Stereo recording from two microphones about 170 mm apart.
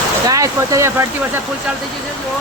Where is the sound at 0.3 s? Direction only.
20° right (ahead or behind).